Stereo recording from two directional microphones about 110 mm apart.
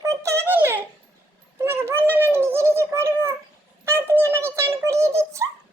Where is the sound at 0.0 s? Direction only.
30° right (ahead or behind).